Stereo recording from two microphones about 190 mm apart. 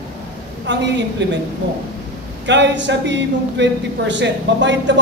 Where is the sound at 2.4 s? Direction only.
70° right (ahead or behind).